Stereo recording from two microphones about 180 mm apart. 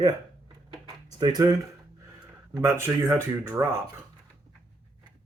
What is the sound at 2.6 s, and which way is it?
Speech, 15° right (ahead or behind).